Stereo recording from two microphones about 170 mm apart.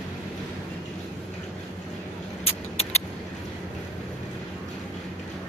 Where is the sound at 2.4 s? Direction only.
35° left (ahead or behind).